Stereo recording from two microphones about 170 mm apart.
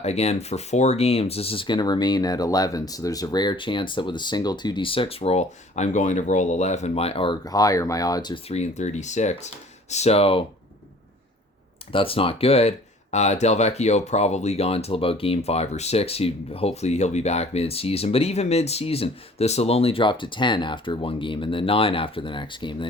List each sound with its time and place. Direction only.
0.0 s speech: 40° left (ahead or behind)
8.5 s speech: 40° left (ahead or behind)
11.9 s speech: 30° left (ahead or behind)